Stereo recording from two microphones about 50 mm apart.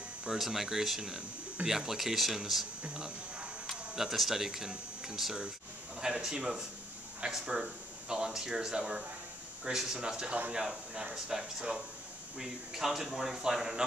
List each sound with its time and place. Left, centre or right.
0.4 s speech: centre
2.8 s speech: right
3.9 s speech: centre